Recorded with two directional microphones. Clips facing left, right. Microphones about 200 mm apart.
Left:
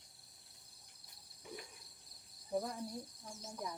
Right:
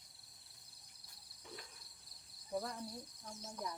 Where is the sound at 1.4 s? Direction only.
15° left (ahead or behind).